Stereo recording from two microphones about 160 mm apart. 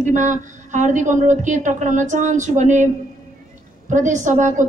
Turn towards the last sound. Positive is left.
turn(degrees=-50)  # may be behind; listen again after turning